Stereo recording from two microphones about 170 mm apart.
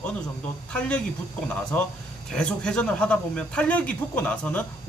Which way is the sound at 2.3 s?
5° left (ahead or behind).